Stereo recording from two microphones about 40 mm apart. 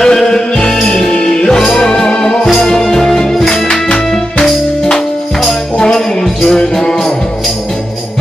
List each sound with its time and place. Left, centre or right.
0.0 s music: centre